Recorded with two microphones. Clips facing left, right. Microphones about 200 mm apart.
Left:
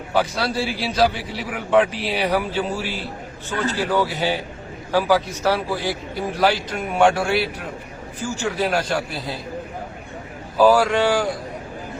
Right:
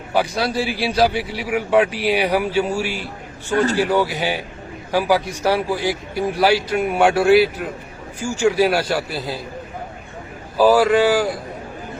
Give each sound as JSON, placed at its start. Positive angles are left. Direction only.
{"t": 0.1, "sound": "a man's voice", "side_deg": -15}
{"t": 8.2, "sound": "a man's voice", "side_deg": -15}
{"t": 10.6, "sound": "speech", "side_deg": -5}